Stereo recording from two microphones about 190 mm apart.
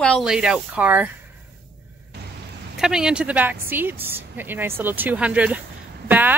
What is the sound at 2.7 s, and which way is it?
Speech, 5° right (ahead or behind).